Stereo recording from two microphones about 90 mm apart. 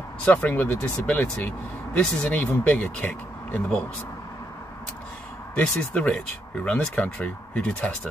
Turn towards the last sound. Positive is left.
turn(degrees=15)  # may be behind; listen again after turning